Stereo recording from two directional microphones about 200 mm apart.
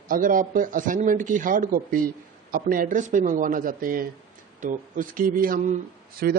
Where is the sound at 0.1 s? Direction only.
45° right (ahead or behind).